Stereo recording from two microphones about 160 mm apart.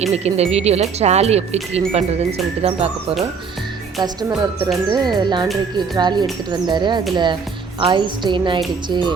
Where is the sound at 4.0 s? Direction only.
25° right (ahead or behind).